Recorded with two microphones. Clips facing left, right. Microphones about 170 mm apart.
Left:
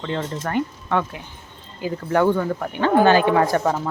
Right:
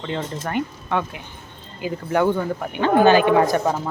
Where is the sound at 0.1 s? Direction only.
15° right (ahead or behind).